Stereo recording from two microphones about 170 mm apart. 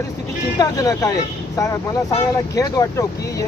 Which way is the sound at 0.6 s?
20° left (ahead or behind).